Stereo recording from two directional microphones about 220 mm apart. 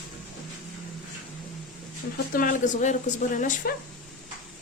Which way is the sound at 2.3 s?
35° left (ahead or behind).